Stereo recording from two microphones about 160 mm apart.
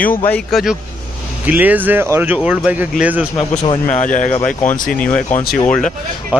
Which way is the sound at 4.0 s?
50° left (ahead or behind).